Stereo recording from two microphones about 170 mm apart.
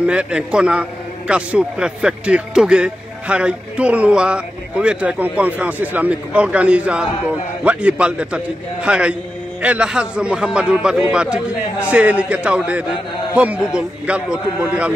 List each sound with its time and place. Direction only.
0.0 s a man's voice: 5° right (ahead or behind)